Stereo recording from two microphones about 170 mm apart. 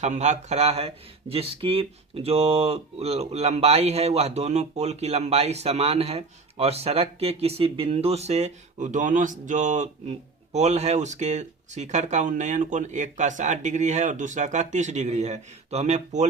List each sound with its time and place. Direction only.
0.0 s speech: 45° right (ahead or behind)